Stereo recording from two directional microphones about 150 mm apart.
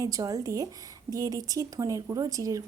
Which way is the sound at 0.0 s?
25° right (ahead or behind).